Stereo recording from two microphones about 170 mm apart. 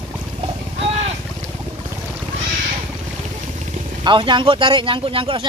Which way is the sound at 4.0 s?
30° right (ahead or behind).